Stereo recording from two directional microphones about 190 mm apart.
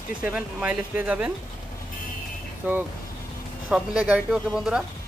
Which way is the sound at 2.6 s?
10° right (ahead or behind).